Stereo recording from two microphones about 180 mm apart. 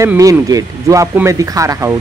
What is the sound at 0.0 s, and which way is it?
Speech, 20° right (ahead or behind).